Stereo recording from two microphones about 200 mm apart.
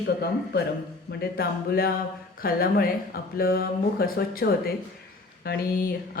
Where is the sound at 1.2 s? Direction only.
50° left (ahead or behind).